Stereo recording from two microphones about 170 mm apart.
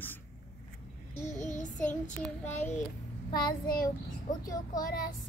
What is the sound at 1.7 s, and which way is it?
Child singing, 10° left (ahead or behind).